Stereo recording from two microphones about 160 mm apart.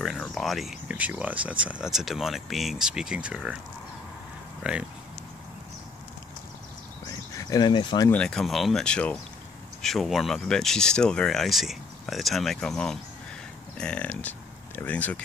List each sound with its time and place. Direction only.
0.0 s speech: centre (ahead or behind)
7.1 s a sound: 20° left (ahead or behind)
8.1 s speech: 5° left (ahead or behind)